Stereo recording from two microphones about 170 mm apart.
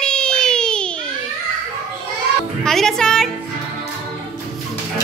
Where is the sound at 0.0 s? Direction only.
5° left (ahead or behind).